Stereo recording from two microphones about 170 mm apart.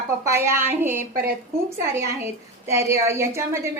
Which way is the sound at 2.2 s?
15° right (ahead or behind).